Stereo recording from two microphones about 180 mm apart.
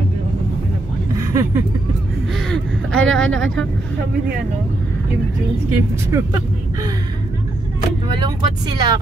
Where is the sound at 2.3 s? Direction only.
Centre (ahead or behind).